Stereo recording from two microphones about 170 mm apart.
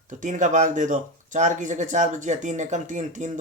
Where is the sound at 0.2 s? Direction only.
50° right (ahead or behind).